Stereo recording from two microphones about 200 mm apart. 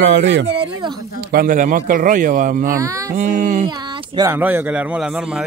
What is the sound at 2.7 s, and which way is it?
Speech, 15° right (ahead or behind).